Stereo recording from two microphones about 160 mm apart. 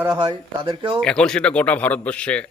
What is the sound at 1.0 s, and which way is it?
Speech, 5° left (ahead or behind).